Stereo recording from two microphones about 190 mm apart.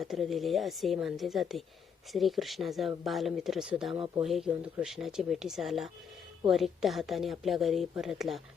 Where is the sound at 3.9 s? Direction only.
25° right (ahead or behind).